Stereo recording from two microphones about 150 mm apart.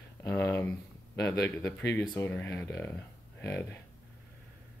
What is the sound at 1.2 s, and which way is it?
Speech, 20° left (ahead or behind).